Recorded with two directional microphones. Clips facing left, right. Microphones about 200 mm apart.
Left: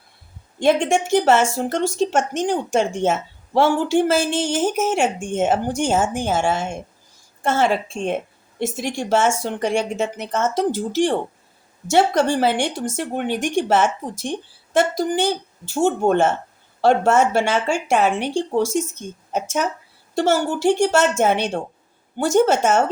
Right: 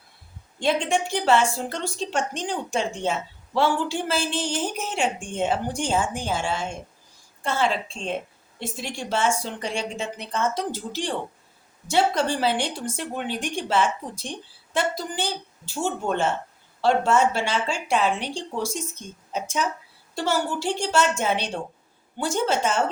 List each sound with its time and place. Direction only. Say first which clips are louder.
0.6 s a woman's voice: left 6 dB; 45° left (ahead or behind)
20.1 s a woman's voice: left 6 dB; 45° left (ahead or behind)